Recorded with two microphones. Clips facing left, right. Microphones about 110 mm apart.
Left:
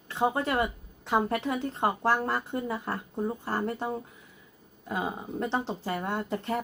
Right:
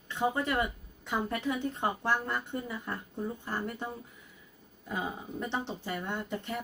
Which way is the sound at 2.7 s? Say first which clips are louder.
Left 5 dB; 35° left (ahead or behind).